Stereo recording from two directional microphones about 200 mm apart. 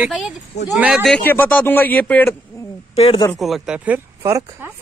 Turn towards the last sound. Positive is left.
turn(degrees=-15)  # may be behind; listen again after turning